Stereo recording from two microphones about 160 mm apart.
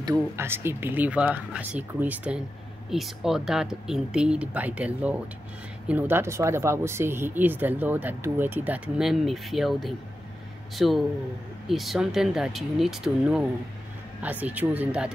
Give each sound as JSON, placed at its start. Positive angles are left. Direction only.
{"t": 0.0, "sound": "speech", "side_deg": -20}